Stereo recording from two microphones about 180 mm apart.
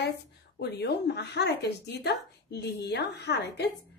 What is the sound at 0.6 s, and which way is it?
Speech, 65° left (ahead or behind).